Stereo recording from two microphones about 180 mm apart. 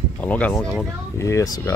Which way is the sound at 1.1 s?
15° left (ahead or behind).